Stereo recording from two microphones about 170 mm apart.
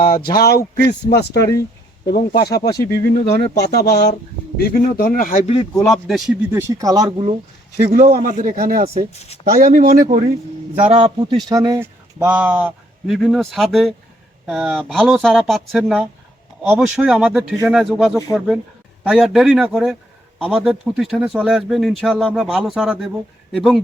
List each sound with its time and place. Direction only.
0.0 s speech: 60° left (ahead or behind)
2.4 s speech: 70° left (ahead or behind)
4.5 s speech: 55° left (ahead or behind)
5.8 s speech: centre (ahead or behind)
6.6 s speech: 20° right (ahead or behind)
7.9 s a man's voice: 55° right (ahead or behind)
10.8 s a man's voice: 30° right (ahead or behind)
11.4 s speech: 20° right (ahead or behind); by 23.8 s centre (ahead or behind)